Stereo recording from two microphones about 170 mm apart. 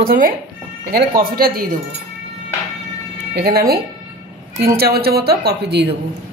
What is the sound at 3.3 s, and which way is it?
Speech, 65° right (ahead or behind).